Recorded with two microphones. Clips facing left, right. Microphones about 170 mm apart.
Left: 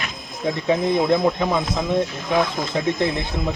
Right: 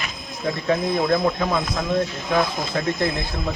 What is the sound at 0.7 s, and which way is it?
Speech, 15° left (ahead or behind).